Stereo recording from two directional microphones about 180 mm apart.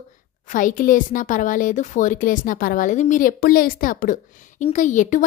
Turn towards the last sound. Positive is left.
turn(degrees=45)  # may be behind; listen again after turning